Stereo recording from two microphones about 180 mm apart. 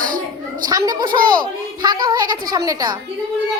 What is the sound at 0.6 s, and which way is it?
Child singing, 20° right (ahead or behind).